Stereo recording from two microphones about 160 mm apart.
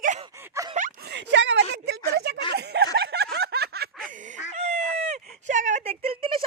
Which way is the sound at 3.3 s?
90° right.